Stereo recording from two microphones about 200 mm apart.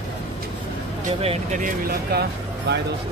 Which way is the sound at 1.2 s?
35° right (ahead or behind).